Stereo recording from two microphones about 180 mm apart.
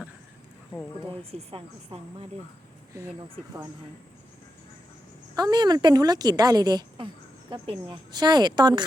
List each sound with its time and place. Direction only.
1.3 s speech: 35° right (ahead or behind)
2.9 s speech: 15° right (ahead or behind)
5.3 s a woman's voice: 20° right (ahead or behind)